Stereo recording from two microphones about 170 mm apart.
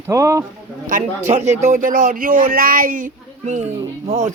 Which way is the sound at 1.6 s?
50° right (ahead or behind).